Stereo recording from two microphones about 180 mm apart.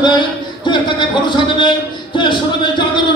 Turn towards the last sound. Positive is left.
turn(degrees=25)  # may be behind; listen again after turning